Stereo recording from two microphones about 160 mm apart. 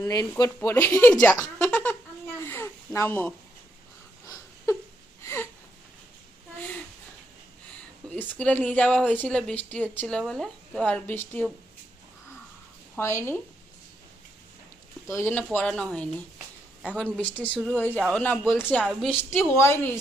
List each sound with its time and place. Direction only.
0.0 s speech: 20° left (ahead or behind)
2.4 s a sound: 15° left (ahead or behind)
8.1 s speech: 10° left (ahead or behind)
13.0 s speech: 15° left (ahead or behind)
15.0 s speech: 15° left (ahead or behind); by 19.1 s centre (ahead or behind)
19.3 s speech: 15° left (ahead or behind)